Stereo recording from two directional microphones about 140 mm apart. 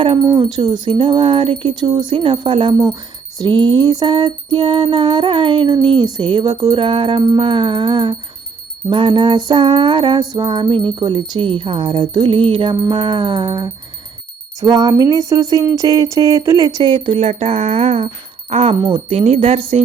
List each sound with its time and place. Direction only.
0.2 s jingle bell: 25° right (ahead or behind)
0.7 s music: 40° right (ahead or behind)
14.6 s jingle bell: 25° right (ahead or behind)
16.9 s a sound: 45° right (ahead or behind)